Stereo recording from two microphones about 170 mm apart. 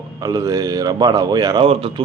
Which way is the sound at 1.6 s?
35° right (ahead or behind).